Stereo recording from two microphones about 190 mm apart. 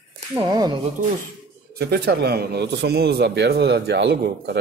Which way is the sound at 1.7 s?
55° right (ahead or behind).